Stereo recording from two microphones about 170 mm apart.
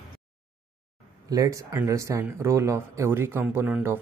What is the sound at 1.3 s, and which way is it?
Speech, 20° right (ahead or behind).